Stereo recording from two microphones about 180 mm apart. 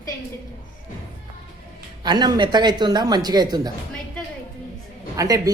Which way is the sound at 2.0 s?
25° right (ahead or behind).